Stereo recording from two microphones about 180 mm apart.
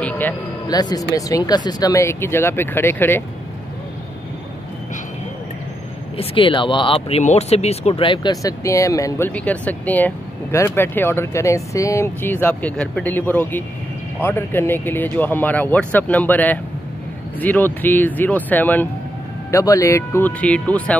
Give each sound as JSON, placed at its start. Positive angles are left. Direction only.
{"t": 0.0, "sound": "a sound", "side_deg": 10}
{"t": 0.7, "sound": "speech", "side_deg": 20}
{"t": 6.1, "sound": "speech", "side_deg": 30}